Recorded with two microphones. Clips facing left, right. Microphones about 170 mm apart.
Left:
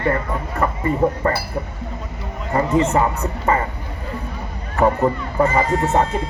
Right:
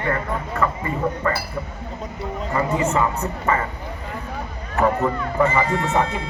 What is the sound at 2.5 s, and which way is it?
Speech, 40° left (ahead or behind).